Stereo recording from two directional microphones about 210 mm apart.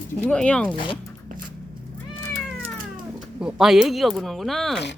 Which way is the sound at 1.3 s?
40° right (ahead or behind).